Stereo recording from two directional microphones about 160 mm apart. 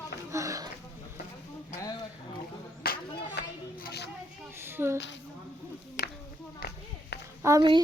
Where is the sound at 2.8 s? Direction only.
70° left (ahead or behind).